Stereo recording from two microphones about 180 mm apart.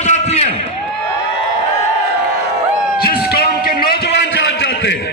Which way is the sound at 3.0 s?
55° left (ahead or behind).